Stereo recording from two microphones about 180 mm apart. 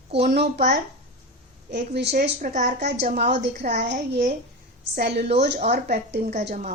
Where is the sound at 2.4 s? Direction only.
45° right (ahead or behind).